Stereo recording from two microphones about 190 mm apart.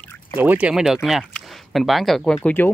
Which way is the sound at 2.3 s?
10° left (ahead or behind).